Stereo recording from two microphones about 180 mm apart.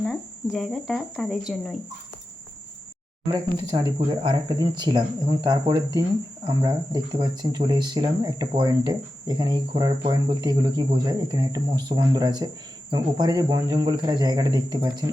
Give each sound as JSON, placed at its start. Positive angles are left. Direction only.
{"t": 0.5, "sound": "speech", "side_deg": 0}
{"t": 3.7, "sound": "speech", "side_deg": -20}